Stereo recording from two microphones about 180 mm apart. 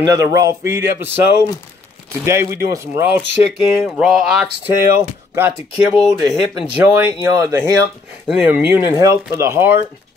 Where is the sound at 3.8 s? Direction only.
Centre (ahead or behind).